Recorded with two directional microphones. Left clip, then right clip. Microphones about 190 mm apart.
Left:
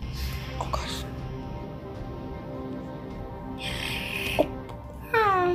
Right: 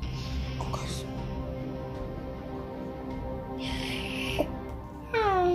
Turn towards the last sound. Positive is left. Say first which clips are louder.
# left 3 dB
turn(degrees=-25)  # may be behind; listen again after turning